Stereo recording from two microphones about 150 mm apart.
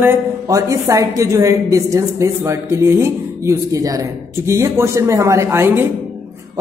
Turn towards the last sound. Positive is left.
turn(degrees=-15)  # may be behind; listen again after turning